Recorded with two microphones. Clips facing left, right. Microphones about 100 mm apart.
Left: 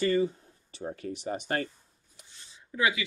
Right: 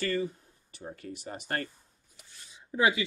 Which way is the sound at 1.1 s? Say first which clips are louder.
Left 7 dB; 20° left (ahead or behind).